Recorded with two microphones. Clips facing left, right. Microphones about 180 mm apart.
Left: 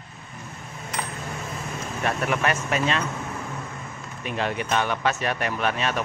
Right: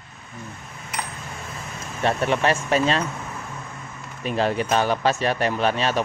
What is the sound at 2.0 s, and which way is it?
Speech, 30° right (ahead or behind).